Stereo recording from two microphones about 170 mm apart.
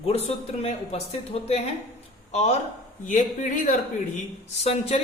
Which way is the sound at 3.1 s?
50° left (ahead or behind).